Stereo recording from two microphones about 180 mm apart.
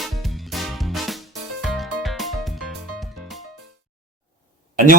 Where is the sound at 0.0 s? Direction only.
Centre (ahead or behind).